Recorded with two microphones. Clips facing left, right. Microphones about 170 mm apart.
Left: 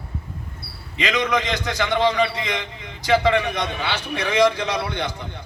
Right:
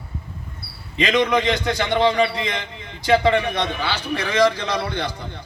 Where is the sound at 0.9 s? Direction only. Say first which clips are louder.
Right 3 dB; 30° right (ahead or behind).